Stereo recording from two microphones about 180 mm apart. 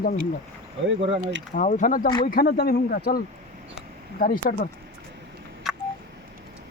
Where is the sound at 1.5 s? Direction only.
45° left (ahead or behind).